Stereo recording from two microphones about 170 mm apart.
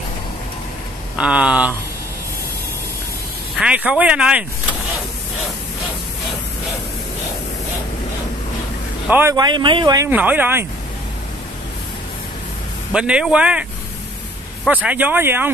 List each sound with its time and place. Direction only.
1.1 s speech: 5° right (ahead or behind)
3.5 s speech: 5° right (ahead or behind)
9.0 s speech: 10° right (ahead or behind)
10.0 s speech: 10° right (ahead or behind)
12.9 s speech: 5° right (ahead or behind)
14.7 s speech: 10° right (ahead or behind)